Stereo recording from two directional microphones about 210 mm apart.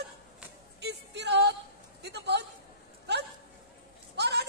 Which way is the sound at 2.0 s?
55° right (ahead or behind).